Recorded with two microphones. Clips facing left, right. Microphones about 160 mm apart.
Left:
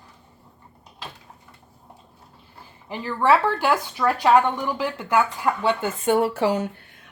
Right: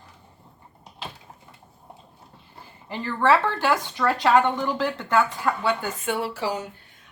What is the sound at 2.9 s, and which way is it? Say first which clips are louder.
Speech: left 1 dB; 10° left (ahead or behind).